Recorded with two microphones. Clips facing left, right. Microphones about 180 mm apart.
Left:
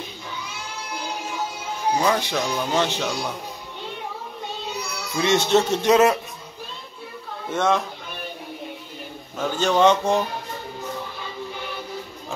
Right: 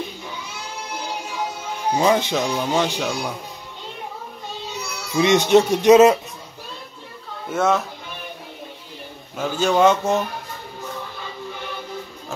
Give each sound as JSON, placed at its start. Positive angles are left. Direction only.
{"t": 2.0, "sound": "speech", "side_deg": -20}
{"t": 5.1, "sound": "speech", "side_deg": -15}
{"t": 7.4, "sound": "speech", "side_deg": -5}
{"t": 9.4, "sound": "speech", "side_deg": -10}